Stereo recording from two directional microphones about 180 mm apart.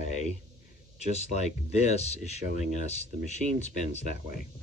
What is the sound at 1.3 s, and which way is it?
Speech, 40° left (ahead or behind).